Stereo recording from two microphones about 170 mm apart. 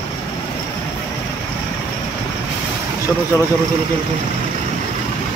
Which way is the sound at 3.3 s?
15° left (ahead or behind).